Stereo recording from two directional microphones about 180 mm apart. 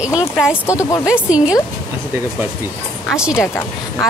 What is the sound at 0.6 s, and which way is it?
Speech, 15° left (ahead or behind).